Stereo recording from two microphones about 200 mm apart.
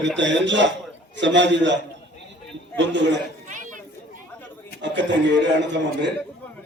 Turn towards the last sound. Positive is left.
turn(degrees=-60)  # may be behind; listen again after turning